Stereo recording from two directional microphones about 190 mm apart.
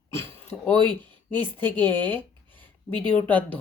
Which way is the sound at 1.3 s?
10° left (ahead or behind).